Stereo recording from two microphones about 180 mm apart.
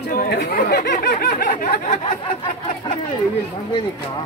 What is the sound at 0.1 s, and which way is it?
Speech, 55° left (ahead or behind).